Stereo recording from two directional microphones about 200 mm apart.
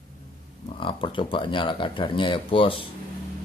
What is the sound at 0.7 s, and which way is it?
Speech, 25° left (ahead or behind).